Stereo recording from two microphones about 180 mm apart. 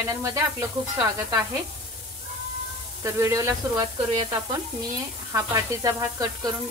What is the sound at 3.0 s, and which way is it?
Speech, 15° right (ahead or behind).